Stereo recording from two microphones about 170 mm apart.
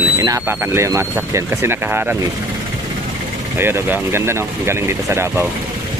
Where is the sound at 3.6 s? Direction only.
15° right (ahead or behind).